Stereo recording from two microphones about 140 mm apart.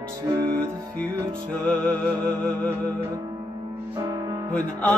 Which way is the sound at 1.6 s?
10° left (ahead or behind).